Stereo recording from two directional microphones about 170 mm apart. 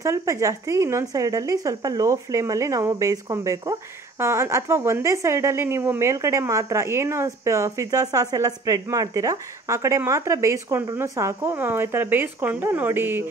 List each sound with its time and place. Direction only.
0.0 s a woman's voice: 15° right (ahead or behind)